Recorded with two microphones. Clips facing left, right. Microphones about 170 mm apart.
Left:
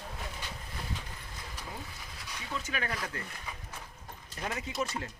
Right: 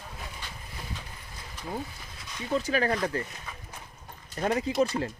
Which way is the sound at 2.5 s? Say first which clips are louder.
Right 10 dB; 35° right (ahead or behind).